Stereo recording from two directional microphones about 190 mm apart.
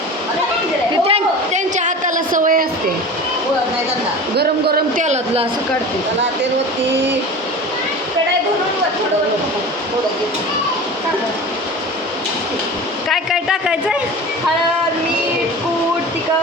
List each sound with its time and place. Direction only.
1.0 s a sound: 35° right (ahead or behind)
4.4 s a man's voice: 55° right (ahead or behind)
5.0 s speech: 35° right (ahead or behind)
13.1 s a man's voice: centre (ahead or behind)